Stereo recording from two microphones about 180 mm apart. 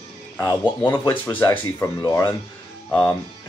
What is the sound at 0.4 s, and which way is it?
Speech, 15° left (ahead or behind).